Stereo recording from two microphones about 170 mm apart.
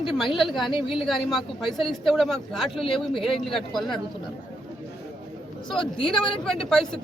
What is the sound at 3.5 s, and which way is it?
Speech, centre (ahead or behind).